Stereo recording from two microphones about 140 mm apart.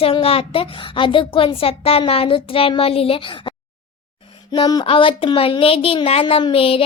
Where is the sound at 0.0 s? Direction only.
40° left (ahead or behind).